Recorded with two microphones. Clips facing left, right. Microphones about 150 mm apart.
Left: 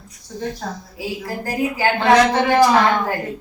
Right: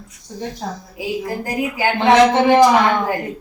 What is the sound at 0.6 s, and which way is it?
A woman's voice, 20° right (ahead or behind).